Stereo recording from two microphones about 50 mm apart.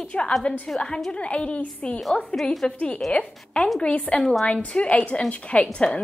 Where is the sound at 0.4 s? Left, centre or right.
Centre.